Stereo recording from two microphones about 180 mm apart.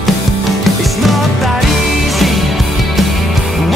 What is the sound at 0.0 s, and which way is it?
Music, centre (ahead or behind).